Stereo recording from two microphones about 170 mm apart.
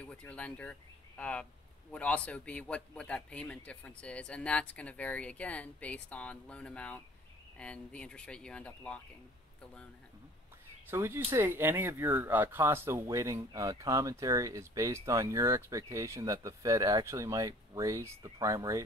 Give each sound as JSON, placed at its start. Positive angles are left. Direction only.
{"t": 0.0, "sound": "speech", "side_deg": 5}
{"t": 10.9, "sound": "speech", "side_deg": -15}